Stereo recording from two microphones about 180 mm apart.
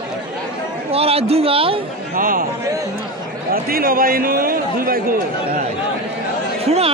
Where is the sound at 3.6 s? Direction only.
55° right (ahead or behind).